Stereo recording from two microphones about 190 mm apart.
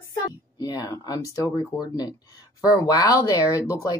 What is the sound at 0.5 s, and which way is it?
Speech, 20° left (ahead or behind).